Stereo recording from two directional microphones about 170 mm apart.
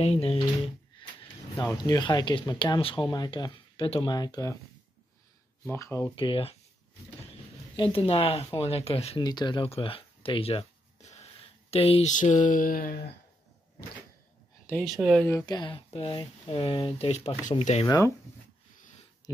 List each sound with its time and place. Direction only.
0.0 s speech: 35° left (ahead or behind)
1.0 s a sound: 30° left (ahead or behind)
1.6 s speech: 25° left (ahead or behind)
5.7 s speech: 15° left (ahead or behind)
6.1 s speech: 30° left (ahead or behind)
7.7 s speech: 30° left (ahead or behind)
9.2 s speech: 25° left (ahead or behind); by 13.1 s 55° left (ahead or behind)
15.1 s speech: 10° left (ahead or behind)
15.4 s speech: 25° left (ahead or behind)
17.8 s speech: 20° left (ahead or behind)
19.2 s a sound: 20° left (ahead or behind)